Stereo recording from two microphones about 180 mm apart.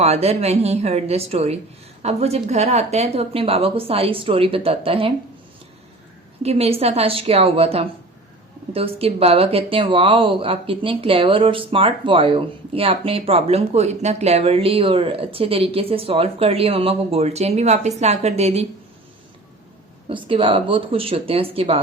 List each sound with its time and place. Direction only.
0.0 s speech: 35° right (ahead or behind)
6.4 s speech: 35° right (ahead or behind)
20.1 s speech: 30° right (ahead or behind)